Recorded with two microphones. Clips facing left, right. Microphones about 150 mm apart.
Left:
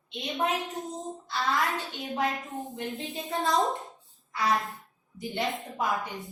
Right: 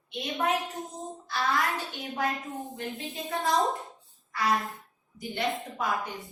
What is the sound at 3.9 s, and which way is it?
Music, 20° left (ahead or behind).